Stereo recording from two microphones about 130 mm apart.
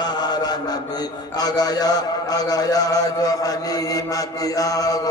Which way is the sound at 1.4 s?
30° left (ahead or behind).